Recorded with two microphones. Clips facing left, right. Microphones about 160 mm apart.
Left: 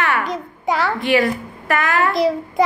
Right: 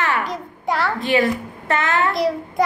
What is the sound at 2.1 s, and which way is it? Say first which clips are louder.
Child singing: left 3 dB; centre (ahead or behind).